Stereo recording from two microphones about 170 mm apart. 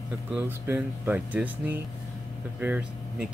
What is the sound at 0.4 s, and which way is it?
Speech, 15° right (ahead or behind).